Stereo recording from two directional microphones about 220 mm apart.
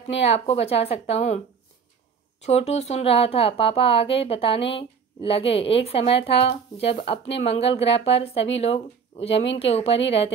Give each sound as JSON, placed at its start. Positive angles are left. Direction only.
{"t": 0.1, "sound": "speech", "side_deg": 30}
{"t": 2.4, "sound": "speech", "side_deg": 30}